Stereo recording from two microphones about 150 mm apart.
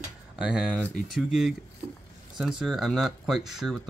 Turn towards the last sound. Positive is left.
turn(degrees=0)  # may be behind; listen again after turning